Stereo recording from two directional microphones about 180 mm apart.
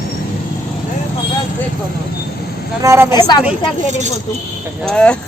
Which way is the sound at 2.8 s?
15° right (ahead or behind).